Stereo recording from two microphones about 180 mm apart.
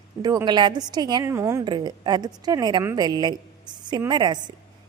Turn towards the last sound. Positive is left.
turn(degrees=-25)  # may be behind; listen again after turning